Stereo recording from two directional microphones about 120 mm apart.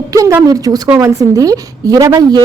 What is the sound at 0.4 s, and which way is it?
A woman's voice, 30° right (ahead or behind).